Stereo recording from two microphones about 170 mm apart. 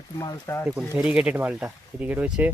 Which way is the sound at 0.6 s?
15° right (ahead or behind).